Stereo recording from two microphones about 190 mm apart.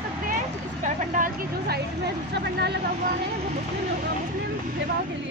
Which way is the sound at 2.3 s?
60° right (ahead or behind).